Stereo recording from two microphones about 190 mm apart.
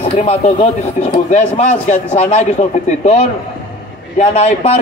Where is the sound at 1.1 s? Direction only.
35° left (ahead or behind).